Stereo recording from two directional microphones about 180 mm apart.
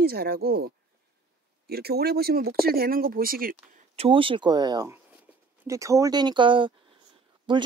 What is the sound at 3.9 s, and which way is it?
Speech, 30° right (ahead or behind).